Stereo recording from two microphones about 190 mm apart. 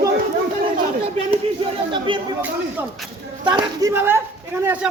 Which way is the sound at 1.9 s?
25° right (ahead or behind).